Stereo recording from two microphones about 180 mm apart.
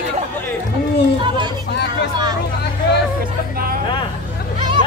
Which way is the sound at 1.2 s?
25° right (ahead or behind).